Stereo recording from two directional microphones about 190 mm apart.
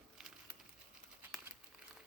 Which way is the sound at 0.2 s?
Centre (ahead or behind).